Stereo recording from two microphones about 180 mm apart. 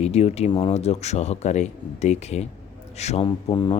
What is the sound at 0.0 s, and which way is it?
A man's voice, 35° left (ahead or behind).